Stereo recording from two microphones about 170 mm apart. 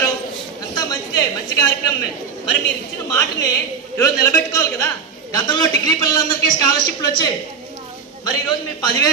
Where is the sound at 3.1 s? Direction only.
15° left (ahead or behind).